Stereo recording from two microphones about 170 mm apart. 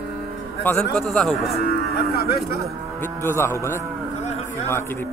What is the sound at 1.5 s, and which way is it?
Livestock, 65° left (ahead or behind).